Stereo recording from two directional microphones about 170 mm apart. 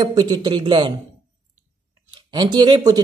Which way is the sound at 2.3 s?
25° right (ahead or behind).